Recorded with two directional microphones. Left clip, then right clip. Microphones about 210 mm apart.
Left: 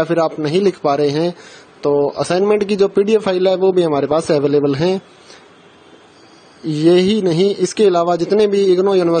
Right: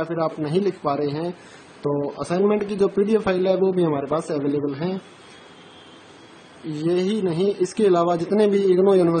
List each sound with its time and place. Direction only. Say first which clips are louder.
0.0 s speech: left 8 dB; 35° left (ahead or behind)
6.8 s speech: left 9 dB; 35° left (ahead or behind)